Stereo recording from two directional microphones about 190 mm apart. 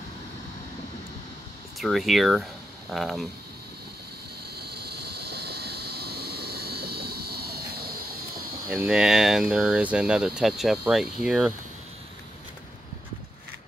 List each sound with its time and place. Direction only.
1.8 s speech: centre (ahead or behind)
4.6 s vehicle: 60° right (ahead or behind)
8.6 s speech: 5° right (ahead or behind)